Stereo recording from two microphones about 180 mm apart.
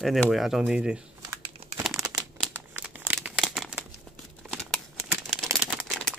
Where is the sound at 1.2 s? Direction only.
25° right (ahead or behind).